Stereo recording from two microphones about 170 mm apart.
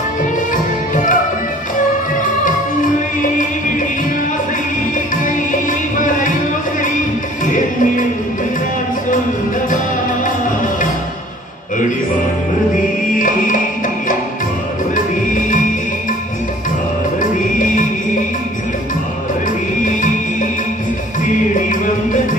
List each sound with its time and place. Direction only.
5.2 s music: 50° left (ahead or behind)
7.4 s music: 50° left (ahead or behind)
15.0 s music: 50° left (ahead or behind)
17.2 s music: 50° left (ahead or behind)